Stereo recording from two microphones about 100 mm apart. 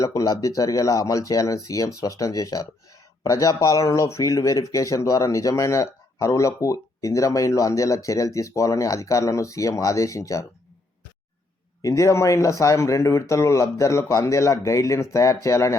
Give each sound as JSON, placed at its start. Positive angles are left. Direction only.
{"t": 0.0, "sound": "speech", "side_deg": 35}
{"t": 11.8, "sound": "speech", "side_deg": 35}